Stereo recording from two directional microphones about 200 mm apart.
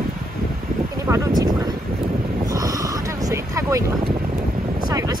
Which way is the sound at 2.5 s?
15° right (ahead or behind).